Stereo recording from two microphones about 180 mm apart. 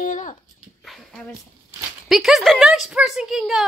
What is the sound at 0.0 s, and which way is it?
Dog, 45° left (ahead or behind).